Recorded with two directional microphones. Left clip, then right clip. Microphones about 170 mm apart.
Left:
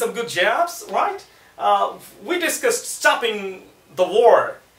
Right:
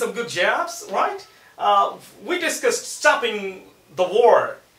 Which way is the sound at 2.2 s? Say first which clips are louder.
Left 1 dB; 15° left (ahead or behind).